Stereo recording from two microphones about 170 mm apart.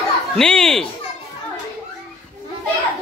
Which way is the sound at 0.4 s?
5° left (ahead or behind).